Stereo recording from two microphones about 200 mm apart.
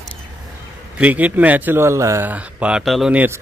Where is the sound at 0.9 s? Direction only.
5° right (ahead or behind).